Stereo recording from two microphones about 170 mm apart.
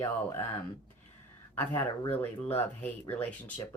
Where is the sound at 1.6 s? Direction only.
10° left (ahead or behind).